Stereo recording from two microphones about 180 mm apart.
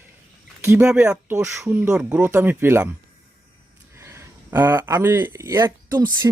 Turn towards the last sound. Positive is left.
turn(degrees=-20)  # may be behind; listen again after turning